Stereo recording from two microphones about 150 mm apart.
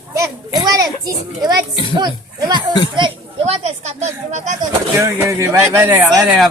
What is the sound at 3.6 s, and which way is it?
Speech, 50° right (ahead or behind).